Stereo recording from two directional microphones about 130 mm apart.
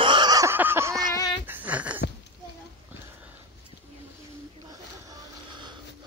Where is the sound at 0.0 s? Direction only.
35° right (ahead or behind).